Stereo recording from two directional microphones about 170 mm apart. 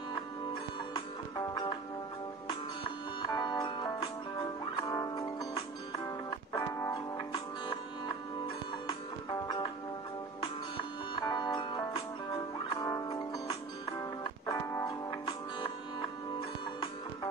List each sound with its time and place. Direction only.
0.9 s music: 25° left (ahead or behind)
6.6 s music: 20° left (ahead or behind)
8.8 s music: 25° left (ahead or behind)
11.1 s music: 25° left (ahead or behind)